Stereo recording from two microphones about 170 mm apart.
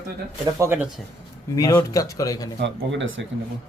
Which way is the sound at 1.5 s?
20° left (ahead or behind).